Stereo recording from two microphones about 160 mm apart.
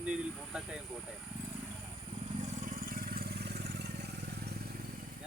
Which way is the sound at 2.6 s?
60° right (ahead or behind).